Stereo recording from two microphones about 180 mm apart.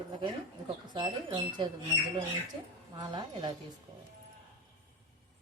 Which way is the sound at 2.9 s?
25° right (ahead or behind).